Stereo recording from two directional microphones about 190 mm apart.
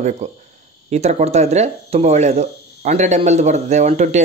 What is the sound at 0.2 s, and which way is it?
Speech, 35° right (ahead or behind).